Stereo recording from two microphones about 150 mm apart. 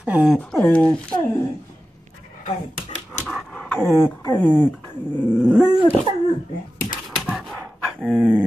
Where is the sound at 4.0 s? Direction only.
15° left (ahead or behind).